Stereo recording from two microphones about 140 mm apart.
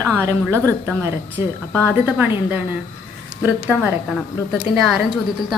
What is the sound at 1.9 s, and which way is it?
A woman's voice, 15° right (ahead or behind).